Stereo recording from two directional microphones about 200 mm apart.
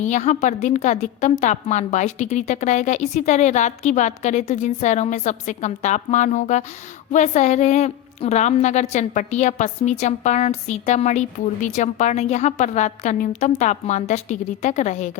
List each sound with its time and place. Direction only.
0.0 s a woman's voice: 35° left (ahead or behind)